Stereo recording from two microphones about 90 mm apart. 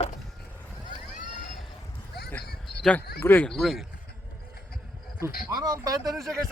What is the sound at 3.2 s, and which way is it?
Speech, 20° left (ahead or behind).